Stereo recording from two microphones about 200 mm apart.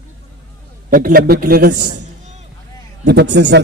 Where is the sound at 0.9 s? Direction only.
45° right (ahead or behind).